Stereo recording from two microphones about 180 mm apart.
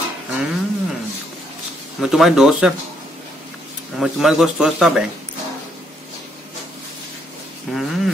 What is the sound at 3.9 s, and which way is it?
A man's voice, centre (ahead or behind).